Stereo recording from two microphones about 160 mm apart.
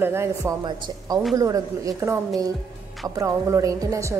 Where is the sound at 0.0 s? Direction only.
15° right (ahead or behind).